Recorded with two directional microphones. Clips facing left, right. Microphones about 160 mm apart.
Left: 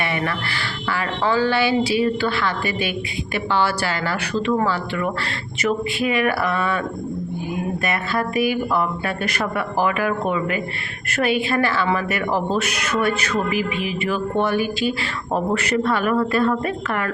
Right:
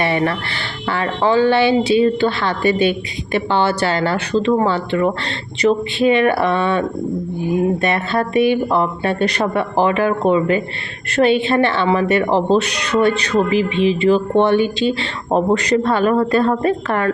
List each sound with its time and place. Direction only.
0.0 s a woman's voice: 30° right (ahead or behind)